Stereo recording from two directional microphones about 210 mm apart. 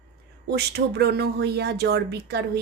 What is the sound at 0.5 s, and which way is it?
Speech, 50° right (ahead or behind).